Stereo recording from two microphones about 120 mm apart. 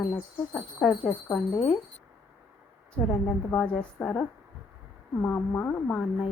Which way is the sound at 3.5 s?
10° left (ahead or behind).